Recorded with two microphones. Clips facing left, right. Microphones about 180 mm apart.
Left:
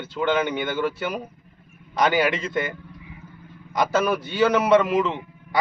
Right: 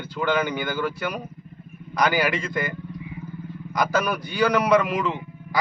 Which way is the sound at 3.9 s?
25° left (ahead or behind).